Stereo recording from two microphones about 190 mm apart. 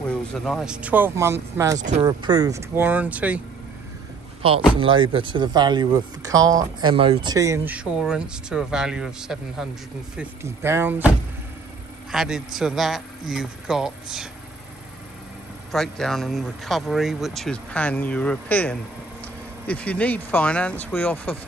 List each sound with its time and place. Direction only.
0.3 s speech: centre (ahead or behind)
1.8 s speech: 40° right (ahead or behind)
2.0 s speech: 20° right (ahead or behind)
4.4 s speech: 30° right (ahead or behind); by 9.7 s centre (ahead or behind)
10.1 s speech: 15° right (ahead or behind)
15.7 s speech: centre (ahead or behind)